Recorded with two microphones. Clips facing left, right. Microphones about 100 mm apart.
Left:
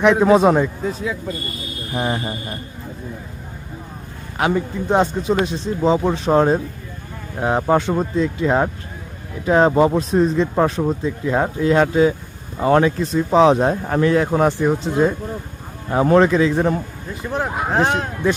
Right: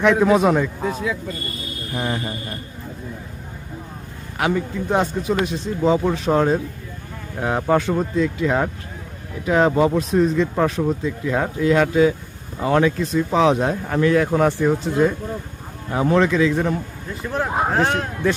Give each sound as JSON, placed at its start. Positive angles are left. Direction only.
{"t": 0.0, "sound": "speech", "side_deg": 25}
{"t": 4.4, "sound": "speech", "side_deg": 25}
{"t": 15.9, "sound": "speech", "side_deg": 40}
{"t": 17.2, "sound": "speech", "side_deg": 20}